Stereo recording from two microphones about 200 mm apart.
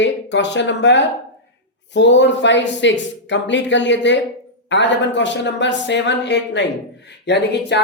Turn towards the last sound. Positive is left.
turn(degrees=60)  # may be behind; listen again after turning